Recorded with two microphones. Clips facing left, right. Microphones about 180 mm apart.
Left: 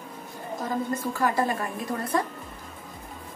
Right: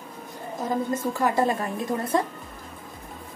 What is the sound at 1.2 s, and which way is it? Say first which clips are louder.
Speech: right 2 dB; 25° right (ahead or behind).